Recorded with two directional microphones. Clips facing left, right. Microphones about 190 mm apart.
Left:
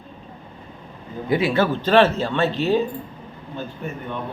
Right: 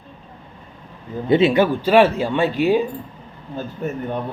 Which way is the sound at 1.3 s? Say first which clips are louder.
Right 5 dB; 25° right (ahead or behind).